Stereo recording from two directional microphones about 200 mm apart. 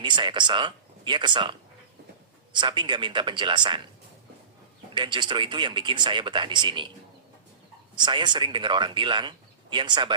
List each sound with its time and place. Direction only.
0.0 s speech: 25° right (ahead or behind)
4.9 s speech: 25° right (ahead or behind)
7.9 s speech: 25° right (ahead or behind)